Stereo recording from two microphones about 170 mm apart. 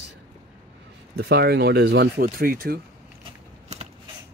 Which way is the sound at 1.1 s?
70° right (ahead or behind).